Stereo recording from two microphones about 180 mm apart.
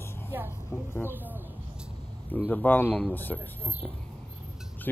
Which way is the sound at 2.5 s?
10° left (ahead or behind).